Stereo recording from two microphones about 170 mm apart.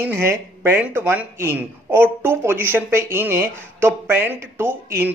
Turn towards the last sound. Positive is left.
turn(degrees=-10)  # may be behind; listen again after turning